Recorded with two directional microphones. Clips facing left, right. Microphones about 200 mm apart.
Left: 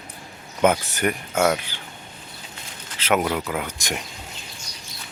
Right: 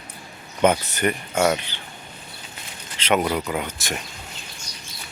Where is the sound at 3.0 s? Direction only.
5° left (ahead or behind).